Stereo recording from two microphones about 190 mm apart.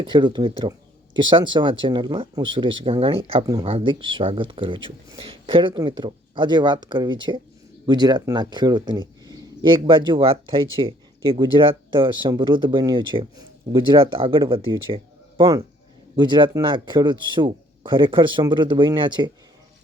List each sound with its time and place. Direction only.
0.0 s speech: 25° right (ahead or behind)